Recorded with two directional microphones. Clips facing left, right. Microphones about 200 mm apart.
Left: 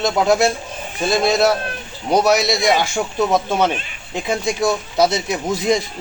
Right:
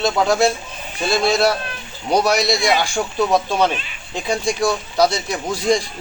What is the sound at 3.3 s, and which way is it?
Speech, 20° left (ahead or behind).